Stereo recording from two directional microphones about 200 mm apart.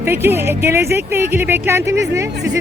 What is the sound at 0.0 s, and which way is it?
Speech, 10° right (ahead or behind).